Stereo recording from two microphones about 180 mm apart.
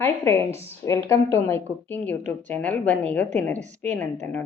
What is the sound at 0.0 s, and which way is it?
A woman's voice, 15° left (ahead or behind).